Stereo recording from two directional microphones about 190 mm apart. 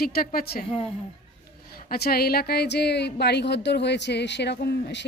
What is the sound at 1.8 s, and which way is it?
Speech, 55° left (ahead or behind).